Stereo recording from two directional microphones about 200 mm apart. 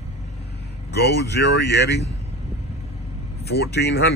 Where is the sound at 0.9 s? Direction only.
55° left (ahead or behind).